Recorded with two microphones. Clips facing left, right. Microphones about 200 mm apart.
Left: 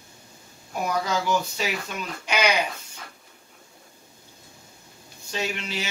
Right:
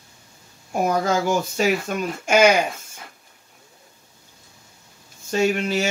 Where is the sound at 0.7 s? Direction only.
50° right (ahead or behind).